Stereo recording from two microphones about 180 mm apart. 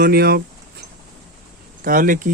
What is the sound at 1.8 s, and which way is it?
Speech, 50° right (ahead or behind).